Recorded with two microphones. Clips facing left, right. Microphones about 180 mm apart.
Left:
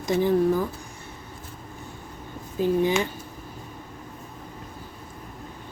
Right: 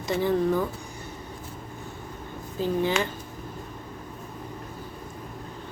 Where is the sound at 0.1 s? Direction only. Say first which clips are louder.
Left 3 dB; 15° left (ahead or behind).